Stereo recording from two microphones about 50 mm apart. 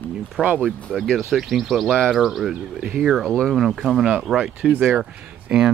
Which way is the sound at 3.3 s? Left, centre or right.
Centre.